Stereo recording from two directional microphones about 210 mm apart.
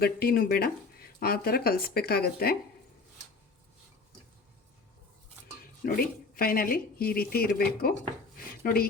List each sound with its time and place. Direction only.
0.0 s speech: 45° left (ahead or behind)
5.8 s speech: 45° left (ahead or behind)
8.4 s dishes: 45° left (ahead or behind)